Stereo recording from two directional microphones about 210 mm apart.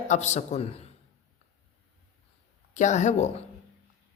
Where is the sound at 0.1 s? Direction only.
35° left (ahead or behind).